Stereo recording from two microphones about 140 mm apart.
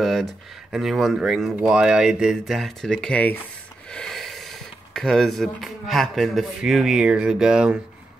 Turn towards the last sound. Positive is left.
turn(degrees=-5)  # may be behind; listen again after turning